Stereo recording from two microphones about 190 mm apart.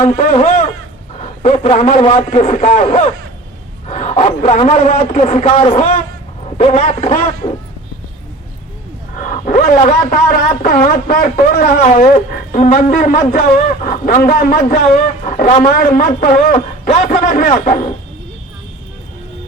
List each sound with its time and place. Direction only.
0.0 s a man's voice: 40° left (ahead or behind)
5.2 s a man's voice: 35° left (ahead or behind)
9.2 s a man's voice: 45° left (ahead or behind)
13.8 s a sound: 45° left (ahead or behind)
14.3 s a man's voice: 50° left (ahead or behind)